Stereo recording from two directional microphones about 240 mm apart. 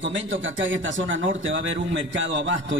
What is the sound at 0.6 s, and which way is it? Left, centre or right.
A man's voice, right.